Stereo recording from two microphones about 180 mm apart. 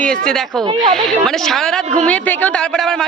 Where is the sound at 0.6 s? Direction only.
20° right (ahead or behind).